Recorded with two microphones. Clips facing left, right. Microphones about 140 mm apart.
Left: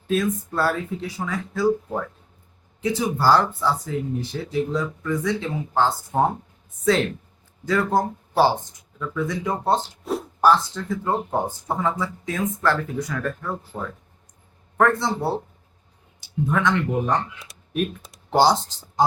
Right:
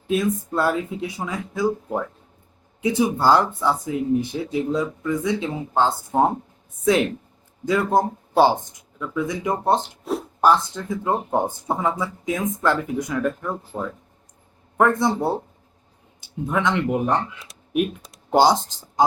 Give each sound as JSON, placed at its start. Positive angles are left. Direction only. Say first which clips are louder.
{"t": 0.1, "sound": "speech", "louder": "right 1 dB", "side_deg": -20}
{"t": 10.0, "sound": "a sound", "louder": "right 1 dB", "side_deg": 0}
{"t": 10.4, "sound": "speech", "louder": "even", "side_deg": -20}
{"t": 16.5, "sound": "speech", "louder": "right 1 dB", "side_deg": -20}
{"t": 17.5, "sound": "typing", "louder": "right 1 dB", "side_deg": 0}
{"t": 18.3, "sound": "speech", "louder": "right 1 dB", "side_deg": -15}